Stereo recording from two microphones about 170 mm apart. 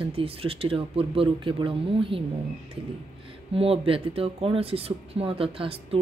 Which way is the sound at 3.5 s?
35° right (ahead or behind).